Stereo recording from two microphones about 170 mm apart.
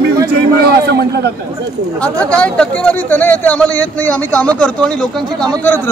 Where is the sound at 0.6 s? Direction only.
70° right (ahead or behind).